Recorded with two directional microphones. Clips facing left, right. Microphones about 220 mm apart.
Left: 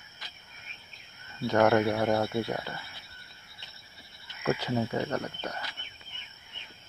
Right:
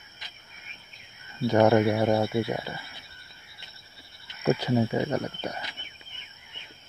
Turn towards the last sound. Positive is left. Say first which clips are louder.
# right 3 dB
turn(degrees=-15)  # may be behind; listen again after turning